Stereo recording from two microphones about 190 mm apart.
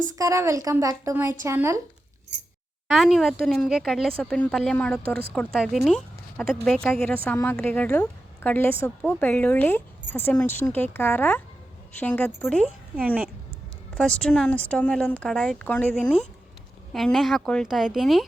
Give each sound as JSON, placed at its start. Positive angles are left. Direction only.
{"t": 0.1, "sound": "a woman's voice", "side_deg": -15}
{"t": 2.8, "sound": "a woman's voice", "side_deg": 0}
{"t": 13.0, "sound": "a woman's voice", "side_deg": -5}
{"t": 13.9, "sound": "a woman's voice", "side_deg": 5}